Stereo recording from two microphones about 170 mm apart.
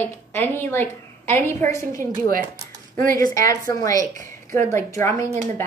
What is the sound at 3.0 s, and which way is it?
Speech, 55° right (ahead or behind).